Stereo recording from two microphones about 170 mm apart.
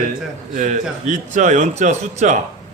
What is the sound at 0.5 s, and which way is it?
A man's voice, 45° right (ahead or behind).